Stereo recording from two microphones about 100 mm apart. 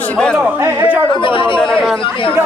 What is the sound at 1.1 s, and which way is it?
Speech, 60° left (ahead or behind).